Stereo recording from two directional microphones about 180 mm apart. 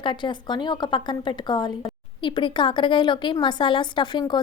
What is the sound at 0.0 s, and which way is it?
A woman's voice, 25° left (ahead or behind).